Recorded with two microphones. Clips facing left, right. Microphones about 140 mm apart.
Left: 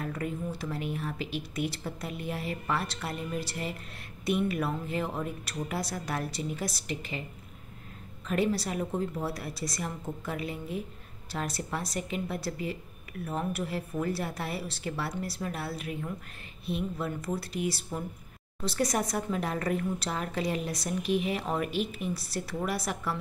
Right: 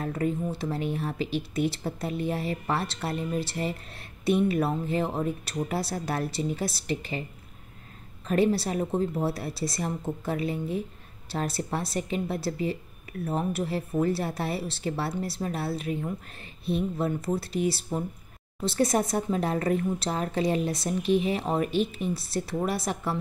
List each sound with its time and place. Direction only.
0.0 s speech: 30° right (ahead or behind)
8.3 s a woman's voice: 30° right (ahead or behind)